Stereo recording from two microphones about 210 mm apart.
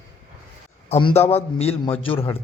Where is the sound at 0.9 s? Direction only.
25° left (ahead or behind).